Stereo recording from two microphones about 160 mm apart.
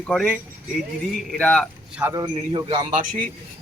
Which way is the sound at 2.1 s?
30° right (ahead or behind).